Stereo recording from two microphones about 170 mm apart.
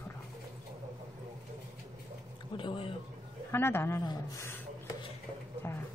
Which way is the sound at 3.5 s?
15° left (ahead or behind).